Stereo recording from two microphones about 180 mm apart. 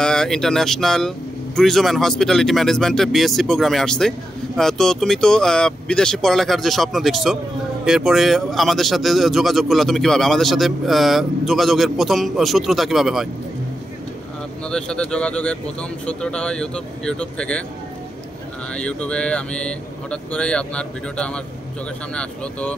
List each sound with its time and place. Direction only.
0.0 s a man's voice: 5° left (ahead or behind)
14.6 s a man's voice: 5° left (ahead or behind)
18.7 s a man's voice: 5° left (ahead or behind)